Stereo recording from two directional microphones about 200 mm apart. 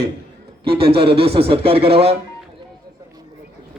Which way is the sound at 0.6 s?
25° right (ahead or behind).